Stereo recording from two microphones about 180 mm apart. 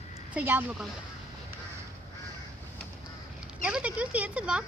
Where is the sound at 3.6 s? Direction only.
5° right (ahead or behind).